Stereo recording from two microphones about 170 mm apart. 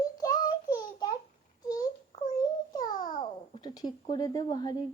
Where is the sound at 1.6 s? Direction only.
20° left (ahead or behind).